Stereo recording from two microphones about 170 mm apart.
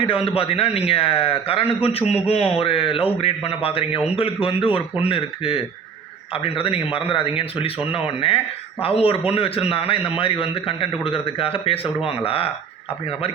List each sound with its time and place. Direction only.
0.0 s a man's voice: 35° left (ahead or behind)